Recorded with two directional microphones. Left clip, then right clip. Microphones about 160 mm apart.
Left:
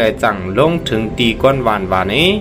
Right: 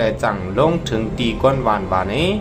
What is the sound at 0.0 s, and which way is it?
Speech, 15° left (ahead or behind).